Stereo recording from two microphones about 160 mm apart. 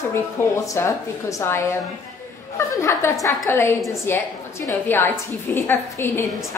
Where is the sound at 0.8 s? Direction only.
15° left (ahead or behind).